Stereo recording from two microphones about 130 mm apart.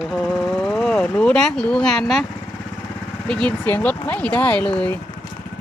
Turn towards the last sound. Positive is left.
turn(degrees=10)  # may be behind; listen again after turning